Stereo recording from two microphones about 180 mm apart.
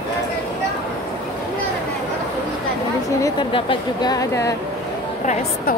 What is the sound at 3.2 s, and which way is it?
Speech, 25° left (ahead or behind).